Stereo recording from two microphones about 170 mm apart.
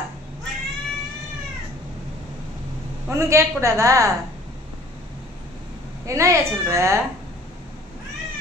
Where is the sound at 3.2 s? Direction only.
15° right (ahead or behind).